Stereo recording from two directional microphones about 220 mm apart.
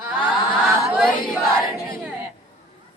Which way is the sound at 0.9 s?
Centre (ahead or behind).